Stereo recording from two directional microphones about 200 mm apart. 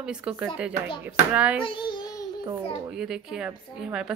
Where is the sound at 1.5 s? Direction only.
25° left (ahead or behind).